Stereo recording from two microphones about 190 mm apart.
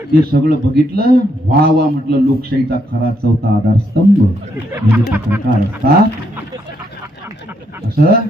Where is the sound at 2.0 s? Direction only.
55° right (ahead or behind).